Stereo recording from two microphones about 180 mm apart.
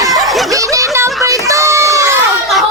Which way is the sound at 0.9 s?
15° right (ahead or behind).